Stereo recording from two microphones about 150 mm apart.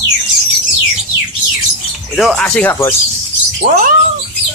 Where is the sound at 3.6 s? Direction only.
50° right (ahead or behind).